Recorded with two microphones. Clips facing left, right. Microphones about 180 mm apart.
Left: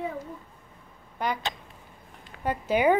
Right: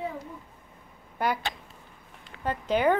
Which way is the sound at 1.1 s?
5° right (ahead or behind).